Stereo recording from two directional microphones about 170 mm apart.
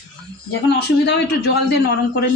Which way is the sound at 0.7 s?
75° left (ahead or behind).